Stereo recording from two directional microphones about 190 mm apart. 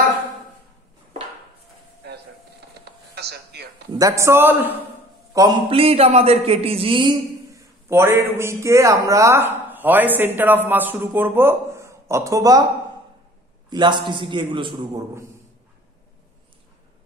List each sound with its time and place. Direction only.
2.8 s a sound: 60° right (ahead or behind)
3.9 s a man's voice: 15° right (ahead or behind)
5.7 s a man's voice: 30° right (ahead or behind)
13.7 s a man's voice: 25° right (ahead or behind)